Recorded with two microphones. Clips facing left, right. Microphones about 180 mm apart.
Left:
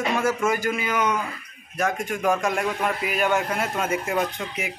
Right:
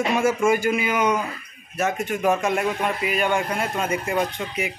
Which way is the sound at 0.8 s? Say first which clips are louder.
Right 3 dB; 10° right (ahead or behind).